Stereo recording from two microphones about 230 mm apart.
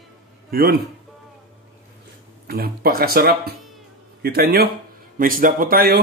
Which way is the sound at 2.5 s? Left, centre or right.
Right.